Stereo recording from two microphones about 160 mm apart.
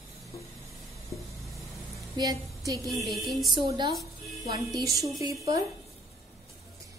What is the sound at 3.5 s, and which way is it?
Speech, 30° right (ahead or behind).